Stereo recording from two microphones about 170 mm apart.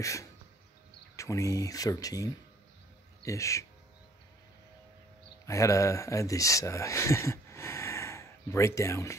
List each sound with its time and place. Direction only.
0.0 s speech: 20° left (ahead or behind)
5.5 s speech: 20° left (ahead or behind)